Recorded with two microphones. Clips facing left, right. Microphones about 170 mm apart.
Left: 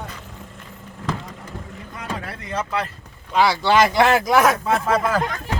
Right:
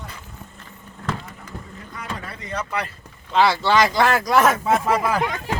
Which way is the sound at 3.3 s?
10° left (ahead or behind).